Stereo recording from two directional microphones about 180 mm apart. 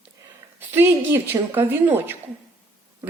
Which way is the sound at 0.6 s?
10° right (ahead or behind).